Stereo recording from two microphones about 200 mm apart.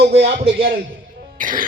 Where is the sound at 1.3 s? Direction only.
40° right (ahead or behind).